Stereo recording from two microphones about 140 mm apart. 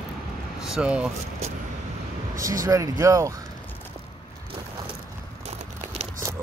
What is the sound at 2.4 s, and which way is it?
Speech, 25° right (ahead or behind).